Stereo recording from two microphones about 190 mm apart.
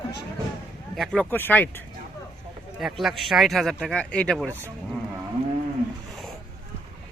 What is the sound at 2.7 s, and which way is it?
Speech, centre (ahead or behind).